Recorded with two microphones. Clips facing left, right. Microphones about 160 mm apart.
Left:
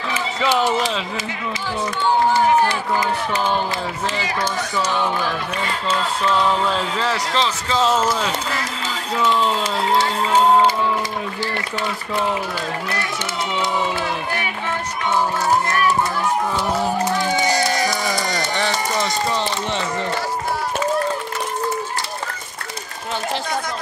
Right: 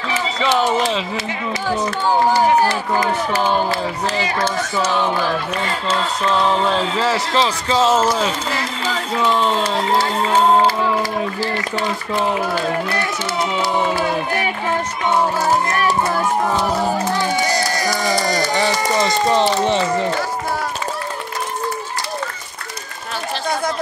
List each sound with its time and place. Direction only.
1.7 s speech: 40° right (ahead or behind)
7.3 s speech: 5° right (ahead or behind)